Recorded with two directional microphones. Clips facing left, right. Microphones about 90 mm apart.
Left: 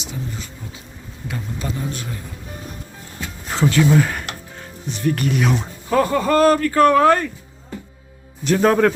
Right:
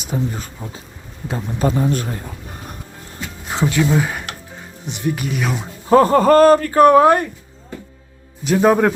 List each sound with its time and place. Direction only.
0.0 s a man's voice: 45° right (ahead or behind)
3.5 s music: 15° right (ahead or behind)
5.1 s speech: 5° right (ahead or behind)
5.9 s speech: 40° right (ahead or behind)
6.8 s speech: 20° right (ahead or behind)
8.4 s a man's voice: 10° right (ahead or behind)